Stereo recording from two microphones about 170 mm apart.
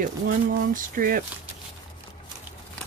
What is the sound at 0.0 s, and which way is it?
Speech, 55° right (ahead or behind).